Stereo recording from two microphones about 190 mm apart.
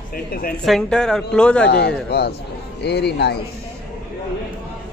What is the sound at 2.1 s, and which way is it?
A woman's voice, 60° left (ahead or behind).